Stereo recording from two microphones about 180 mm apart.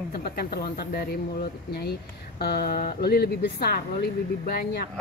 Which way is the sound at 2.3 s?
60° left (ahead or behind).